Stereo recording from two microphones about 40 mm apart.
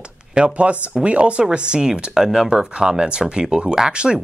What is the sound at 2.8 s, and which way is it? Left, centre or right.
Speech, right.